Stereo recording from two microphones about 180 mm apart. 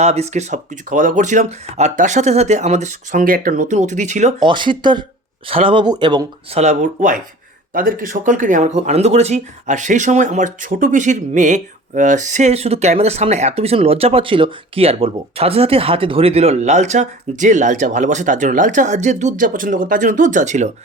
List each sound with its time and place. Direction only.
0.0 s speech: 35° right (ahead or behind)
4.4 s speech: 25° right (ahead or behind)
6.6 s speech: 40° right (ahead or behind)